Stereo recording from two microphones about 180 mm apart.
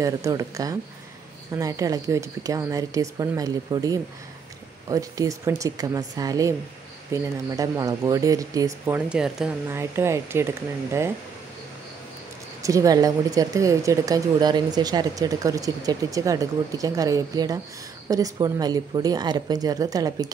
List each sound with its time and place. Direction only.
0.0 s speech: 15° right (ahead or behind)
12.6 s speech: 20° right (ahead or behind)